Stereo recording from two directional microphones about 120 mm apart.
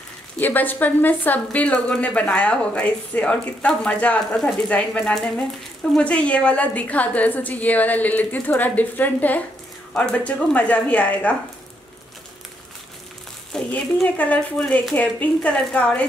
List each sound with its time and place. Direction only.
0.4 s a woman's voice: 15° left (ahead or behind)
13.5 s a woman's voice: 5° left (ahead or behind)